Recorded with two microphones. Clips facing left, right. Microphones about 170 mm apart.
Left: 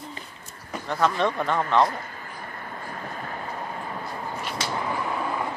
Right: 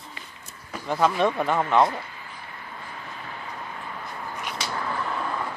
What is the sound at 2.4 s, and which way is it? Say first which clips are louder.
Vehicle: left 5 dB; 50° left (ahead or behind).